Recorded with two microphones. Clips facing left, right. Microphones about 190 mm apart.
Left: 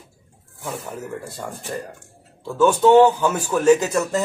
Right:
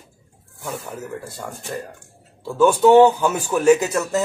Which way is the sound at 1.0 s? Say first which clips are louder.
Even; centre (ahead or behind).